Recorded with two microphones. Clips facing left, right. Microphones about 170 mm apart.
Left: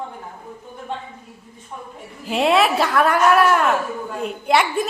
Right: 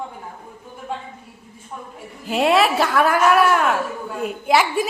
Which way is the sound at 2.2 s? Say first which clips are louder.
Even; centre (ahead or behind).